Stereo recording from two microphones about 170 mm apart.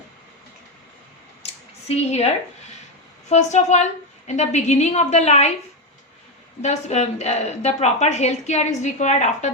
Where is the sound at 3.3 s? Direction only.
40° left (ahead or behind).